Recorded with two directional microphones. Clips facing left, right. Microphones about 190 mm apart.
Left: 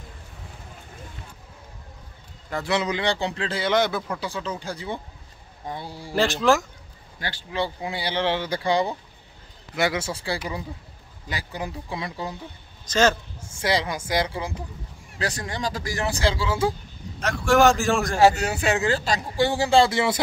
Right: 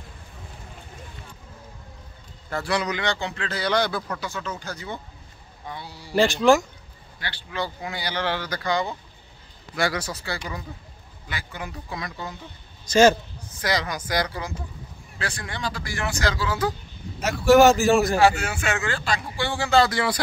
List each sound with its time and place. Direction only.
2.5 s a man's voice: 20° left (ahead or behind)
5.7 s a man's voice: 45° left (ahead or behind)
6.1 s a man's voice: centre (ahead or behind)
7.2 s a man's voice: 45° left (ahead or behind)
7.9 s a man's voice: 25° left (ahead or behind)
12.8 s a man's voice: 10° right (ahead or behind)
13.4 s a man's voice: 25° left (ahead or behind)
15.1 s speech: 40° left (ahead or behind)
17.2 s a man's voice: 5° right (ahead or behind)
18.2 s speech: 40° left (ahead or behind)
19.7 s a man's voice: 25° left (ahead or behind)